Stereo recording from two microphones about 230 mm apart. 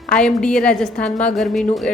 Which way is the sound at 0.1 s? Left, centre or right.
Centre.